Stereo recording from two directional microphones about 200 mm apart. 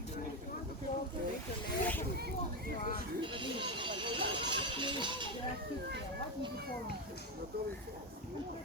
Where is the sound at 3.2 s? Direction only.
25° right (ahead or behind).